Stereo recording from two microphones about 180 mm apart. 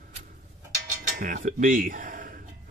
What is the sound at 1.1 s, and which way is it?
Speech, 50° right (ahead or behind).